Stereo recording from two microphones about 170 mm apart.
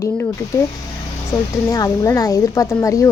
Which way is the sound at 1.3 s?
20° left (ahead or behind).